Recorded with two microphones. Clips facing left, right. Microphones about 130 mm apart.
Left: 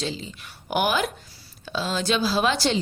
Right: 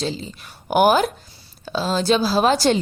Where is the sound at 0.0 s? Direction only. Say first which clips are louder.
Right 4 dB; 40° right (ahead or behind).